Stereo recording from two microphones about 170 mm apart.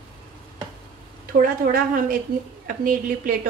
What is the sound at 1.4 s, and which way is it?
A woman's voice, 55° right (ahead or behind).